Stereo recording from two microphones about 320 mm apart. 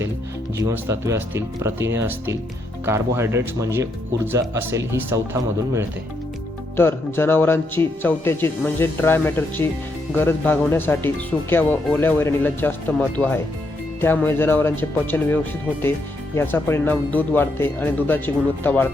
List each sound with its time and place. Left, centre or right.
0.5 s speech: centre
6.7 s speech: centre